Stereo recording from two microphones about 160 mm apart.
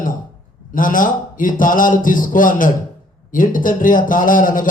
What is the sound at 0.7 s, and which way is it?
A man's voice, 55° left (ahead or behind).